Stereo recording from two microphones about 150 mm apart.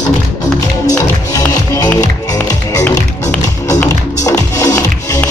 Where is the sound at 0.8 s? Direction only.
25° left (ahead or behind).